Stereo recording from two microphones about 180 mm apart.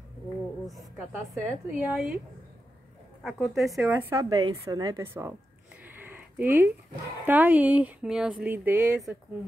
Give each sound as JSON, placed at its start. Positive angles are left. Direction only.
{"t": 0.7, "sound": "a sound", "side_deg": 0}
{"t": 1.7, "sound": "speech", "side_deg": -5}
{"t": 3.2, "sound": "speech", "side_deg": 0}
{"t": 4.1, "sound": "speech", "side_deg": -20}
{"t": 6.0, "sound": "a sound", "side_deg": -10}
{"t": 7.2, "sound": "speech", "side_deg": -10}